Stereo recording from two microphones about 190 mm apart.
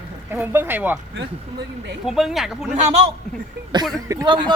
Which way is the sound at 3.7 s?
25° right (ahead or behind).